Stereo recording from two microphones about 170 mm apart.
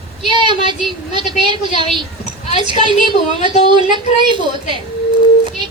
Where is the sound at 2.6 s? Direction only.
30° right (ahead or behind).